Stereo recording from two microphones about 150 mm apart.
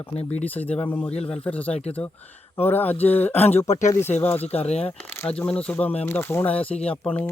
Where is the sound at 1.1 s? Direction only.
40° left (ahead or behind).